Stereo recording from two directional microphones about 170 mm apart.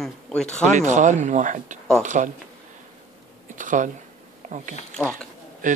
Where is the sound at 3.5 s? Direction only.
50° right (ahead or behind).